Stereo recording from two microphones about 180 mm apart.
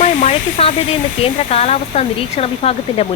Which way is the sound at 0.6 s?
35° left (ahead or behind).